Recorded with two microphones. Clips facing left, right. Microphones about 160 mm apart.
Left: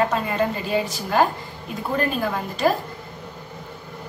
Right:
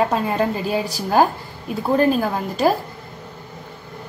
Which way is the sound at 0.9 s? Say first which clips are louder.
Right 5 dB; 40° right (ahead or behind).